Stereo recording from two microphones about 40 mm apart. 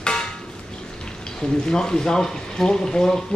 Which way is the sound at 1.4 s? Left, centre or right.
Centre.